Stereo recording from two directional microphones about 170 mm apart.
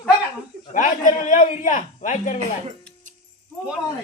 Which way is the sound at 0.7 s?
50° left (ahead or behind).